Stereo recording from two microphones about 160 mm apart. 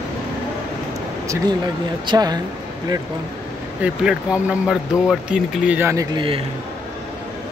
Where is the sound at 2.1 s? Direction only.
25° right (ahead or behind).